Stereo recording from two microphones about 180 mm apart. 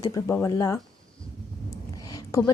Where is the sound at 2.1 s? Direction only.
15° left (ahead or behind).